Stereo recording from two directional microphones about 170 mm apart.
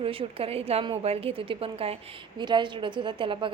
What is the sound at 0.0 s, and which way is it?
A woman's voice, 35° right (ahead or behind).